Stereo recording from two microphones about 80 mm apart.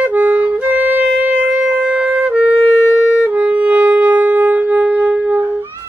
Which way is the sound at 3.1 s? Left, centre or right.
Centre.